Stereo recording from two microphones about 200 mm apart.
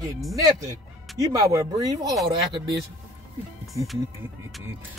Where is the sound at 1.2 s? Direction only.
15° right (ahead or behind).